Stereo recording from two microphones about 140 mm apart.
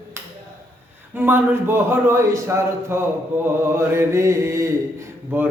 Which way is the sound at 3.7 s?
20° right (ahead or behind).